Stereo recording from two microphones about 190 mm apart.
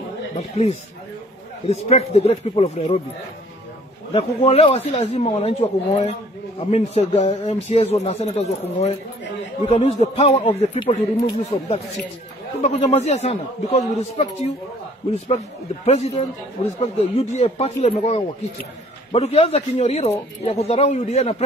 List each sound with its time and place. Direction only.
0.4 s speech: 35° left (ahead or behind)
4.1 s speech: 30° left (ahead or behind)